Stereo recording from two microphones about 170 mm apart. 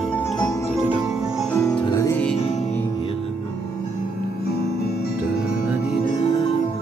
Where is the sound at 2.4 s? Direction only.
40° left (ahead or behind).